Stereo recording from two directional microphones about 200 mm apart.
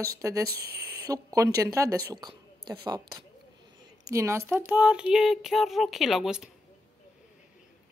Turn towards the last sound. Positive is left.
turn(degrees=-5)  # may be behind; listen again after turning